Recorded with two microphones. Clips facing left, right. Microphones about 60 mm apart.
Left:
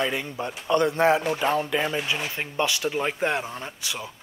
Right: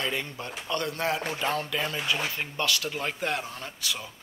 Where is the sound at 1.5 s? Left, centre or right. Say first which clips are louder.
Left 5 dB; centre.